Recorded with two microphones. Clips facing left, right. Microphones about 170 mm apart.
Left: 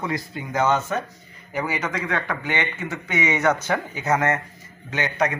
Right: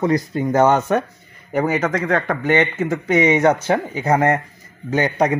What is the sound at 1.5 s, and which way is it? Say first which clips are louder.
A man's voice: right 8 dB; 45° right (ahead or behind).